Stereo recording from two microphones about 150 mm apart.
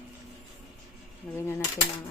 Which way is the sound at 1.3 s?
15° left (ahead or behind).